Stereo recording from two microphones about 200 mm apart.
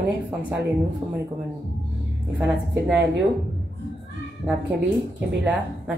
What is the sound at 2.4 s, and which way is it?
Speech, 5° right (ahead or behind).